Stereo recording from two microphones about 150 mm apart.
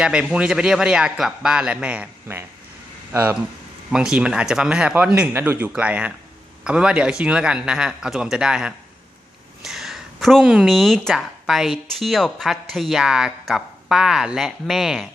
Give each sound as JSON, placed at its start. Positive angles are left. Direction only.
{"t": 0.0, "sound": "speech", "side_deg": -5}